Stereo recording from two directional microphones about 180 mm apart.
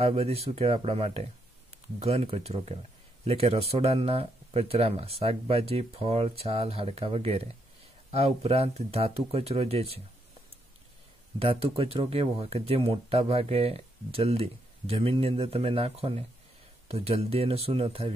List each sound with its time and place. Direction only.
0.0 s speech: 35° right (ahead or behind)
11.3 s speech: 30° right (ahead or behind)